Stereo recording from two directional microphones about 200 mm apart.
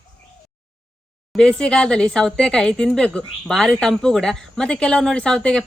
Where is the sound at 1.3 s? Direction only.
5° left (ahead or behind).